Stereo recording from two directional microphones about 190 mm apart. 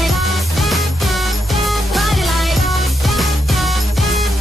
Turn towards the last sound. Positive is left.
turn(degrees=0)  # may be behind; listen again after turning